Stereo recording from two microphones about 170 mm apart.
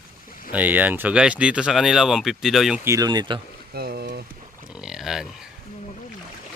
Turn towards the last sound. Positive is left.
turn(degrees=-5)  # may be behind; listen again after turning